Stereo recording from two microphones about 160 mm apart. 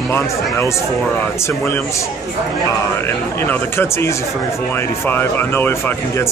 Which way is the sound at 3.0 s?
15° left (ahead or behind).